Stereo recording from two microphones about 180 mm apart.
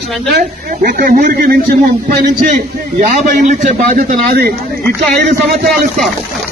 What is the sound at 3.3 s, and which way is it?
A man's voice, 45° right (ahead or behind).